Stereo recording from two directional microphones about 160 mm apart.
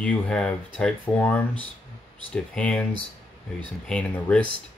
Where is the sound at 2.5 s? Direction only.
5° left (ahead or behind).